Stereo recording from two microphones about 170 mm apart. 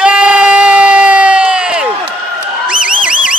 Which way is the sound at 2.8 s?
5° right (ahead or behind).